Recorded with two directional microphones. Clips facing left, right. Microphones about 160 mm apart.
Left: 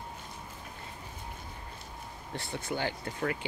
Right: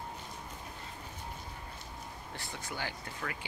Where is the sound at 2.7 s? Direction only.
25° left (ahead or behind).